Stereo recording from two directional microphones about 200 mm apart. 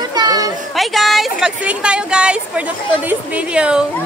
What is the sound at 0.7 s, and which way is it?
A woman's voice, centre (ahead or behind).